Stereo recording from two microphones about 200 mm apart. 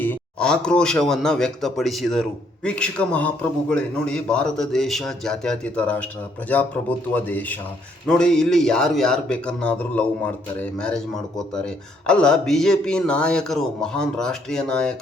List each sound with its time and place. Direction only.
0.0 s speech: 5° left (ahead or behind)
7.1 s a man's voice: 10° left (ahead or behind)